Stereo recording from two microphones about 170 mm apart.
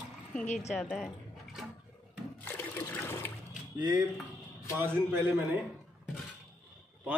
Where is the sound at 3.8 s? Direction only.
25° right (ahead or behind).